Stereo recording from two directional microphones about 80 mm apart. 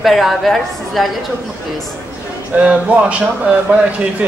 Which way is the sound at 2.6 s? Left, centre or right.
Centre.